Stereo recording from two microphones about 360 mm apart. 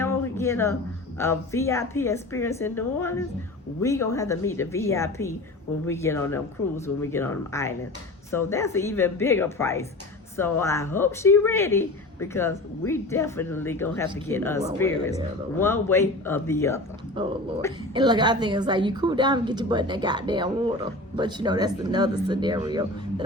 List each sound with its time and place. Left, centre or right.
0.0 s a sound: centre
1.2 s speech: centre
17.2 s a woman's voice: centre